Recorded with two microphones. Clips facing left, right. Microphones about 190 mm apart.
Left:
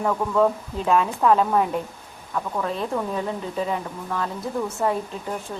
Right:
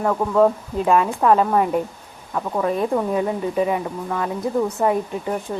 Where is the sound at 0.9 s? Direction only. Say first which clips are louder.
Right 2 dB; 5° right (ahead or behind).